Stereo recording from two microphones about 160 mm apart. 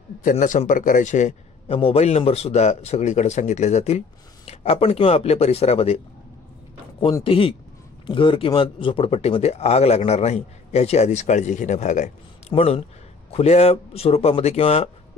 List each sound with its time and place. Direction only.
0.2 s a man's voice: 55° left (ahead or behind)
7.0 s speech: 30° left (ahead or behind); by 12.5 s 50° left (ahead or behind)
12.5 s speech: 35° left (ahead or behind)